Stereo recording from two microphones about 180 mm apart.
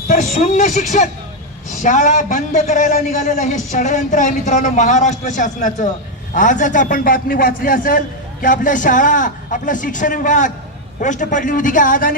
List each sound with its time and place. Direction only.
0.1 s a man's voice: 40° left (ahead or behind)